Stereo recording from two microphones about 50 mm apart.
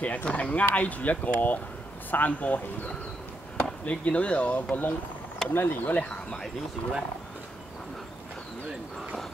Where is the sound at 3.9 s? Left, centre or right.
Left.